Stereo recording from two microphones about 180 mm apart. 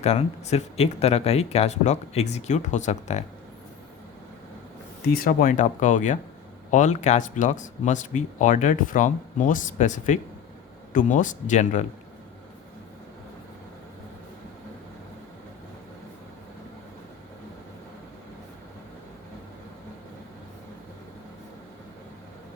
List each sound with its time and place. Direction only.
0.0 s speech: 35° left (ahead or behind)
5.0 s speech: 55° left (ahead or behind)